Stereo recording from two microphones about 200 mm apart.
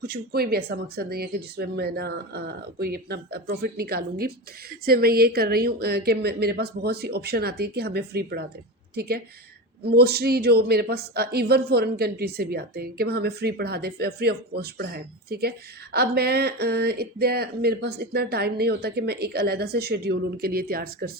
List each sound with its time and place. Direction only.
0.0 s a woman's voice: 50° right (ahead or behind)